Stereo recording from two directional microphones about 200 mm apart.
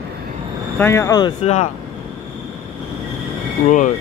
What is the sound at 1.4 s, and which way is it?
Speech, 30° left (ahead or behind).